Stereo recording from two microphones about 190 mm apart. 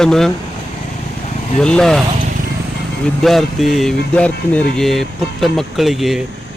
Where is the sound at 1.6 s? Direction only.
5° left (ahead or behind).